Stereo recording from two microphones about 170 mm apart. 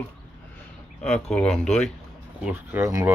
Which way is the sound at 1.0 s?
5° left (ahead or behind).